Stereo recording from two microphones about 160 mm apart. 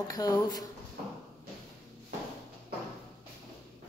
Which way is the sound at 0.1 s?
25° left (ahead or behind).